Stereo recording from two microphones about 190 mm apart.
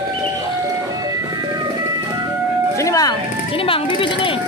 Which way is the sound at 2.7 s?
20° left (ahead or behind).